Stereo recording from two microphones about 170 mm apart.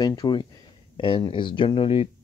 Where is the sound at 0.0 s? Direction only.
25° left (ahead or behind).